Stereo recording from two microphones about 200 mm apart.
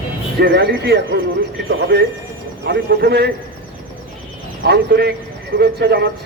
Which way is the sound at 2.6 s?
55° right (ahead or behind).